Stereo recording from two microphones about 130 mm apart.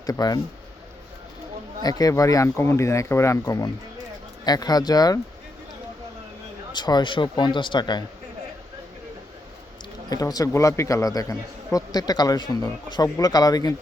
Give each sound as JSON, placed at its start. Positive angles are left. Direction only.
{"t": 0.0, "sound": "a man's voice", "side_deg": 30}
{"t": 1.8, "sound": "a man's voice", "side_deg": 30}
{"t": 6.7, "sound": "speech", "side_deg": 35}
{"t": 10.1, "sound": "a man's voice", "side_deg": 30}